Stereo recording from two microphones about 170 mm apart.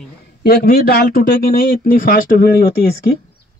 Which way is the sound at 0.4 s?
65° left (ahead or behind).